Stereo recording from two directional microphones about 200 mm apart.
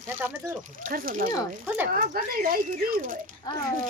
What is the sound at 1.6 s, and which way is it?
Speech, 10° right (ahead or behind).